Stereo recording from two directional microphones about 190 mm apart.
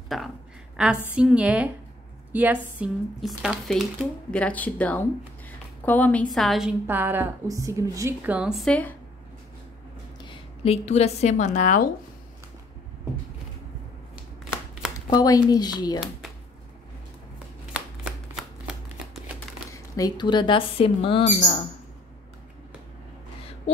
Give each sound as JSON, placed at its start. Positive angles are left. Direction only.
{"t": 0.1, "sound": "speech", "side_deg": 0}
{"t": 6.9, "sound": "a woman's voice", "side_deg": -10}
{"t": 10.2, "sound": "a woman's voice", "side_deg": 30}
{"t": 14.1, "sound": "shuffling cards", "side_deg": -5}
{"t": 15.0, "sound": "speech", "side_deg": 20}
{"t": 17.7, "sound": "shuffling cards", "side_deg": 0}
{"t": 19.7, "sound": "speech", "side_deg": 20}